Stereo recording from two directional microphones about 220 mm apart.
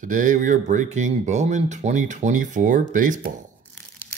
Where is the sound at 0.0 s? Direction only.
35° right (ahead or behind).